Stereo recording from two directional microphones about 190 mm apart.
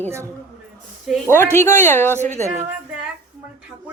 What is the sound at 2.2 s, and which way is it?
Speech, 35° right (ahead or behind).